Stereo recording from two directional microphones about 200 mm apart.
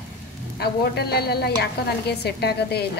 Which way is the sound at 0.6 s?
50° left (ahead or behind).